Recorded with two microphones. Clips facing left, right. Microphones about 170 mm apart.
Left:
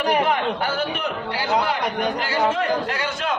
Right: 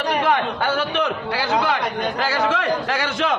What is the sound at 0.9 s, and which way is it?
A man's voice, 90° right.